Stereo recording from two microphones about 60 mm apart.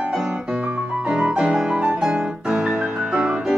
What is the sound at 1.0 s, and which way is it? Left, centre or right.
Music, centre.